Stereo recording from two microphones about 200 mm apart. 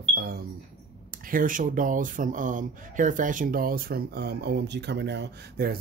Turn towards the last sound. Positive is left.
turn(degrees=-55)  # may be behind; listen again after turning